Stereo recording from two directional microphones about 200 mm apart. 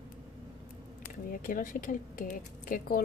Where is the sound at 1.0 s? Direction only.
45° left (ahead or behind).